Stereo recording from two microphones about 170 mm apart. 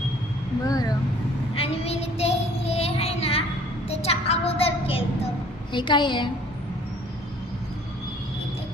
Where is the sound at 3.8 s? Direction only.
35° left (ahead or behind).